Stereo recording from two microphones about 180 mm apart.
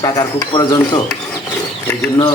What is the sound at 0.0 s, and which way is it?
Speech, 20° left (ahead or behind).